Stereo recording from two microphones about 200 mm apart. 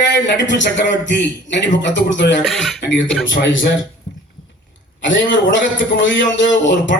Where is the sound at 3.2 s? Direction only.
70° left (ahead or behind).